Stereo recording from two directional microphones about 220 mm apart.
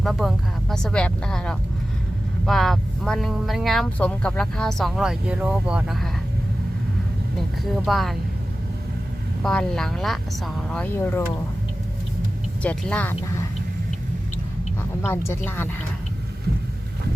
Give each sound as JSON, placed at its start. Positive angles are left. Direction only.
{"t": 0.0, "sound": "speech", "side_deg": 0}
{"t": 7.3, "sound": "speech", "side_deg": 0}
{"t": 9.4, "sound": "speech", "side_deg": 0}
{"t": 12.6, "sound": "a woman's voice", "side_deg": 5}
{"t": 15.0, "sound": "a woman's voice", "side_deg": 10}